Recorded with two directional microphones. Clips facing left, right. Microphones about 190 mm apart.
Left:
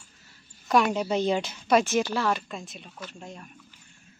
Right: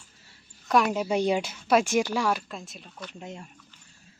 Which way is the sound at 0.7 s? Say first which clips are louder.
Even; centre (ahead or behind).